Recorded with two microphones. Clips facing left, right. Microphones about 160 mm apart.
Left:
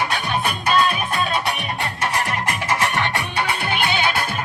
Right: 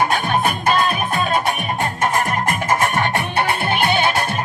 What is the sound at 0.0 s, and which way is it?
Music, 50° right (ahead or behind).